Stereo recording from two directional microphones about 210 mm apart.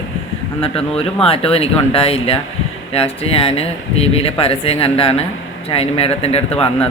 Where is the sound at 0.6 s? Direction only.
30° left (ahead or behind).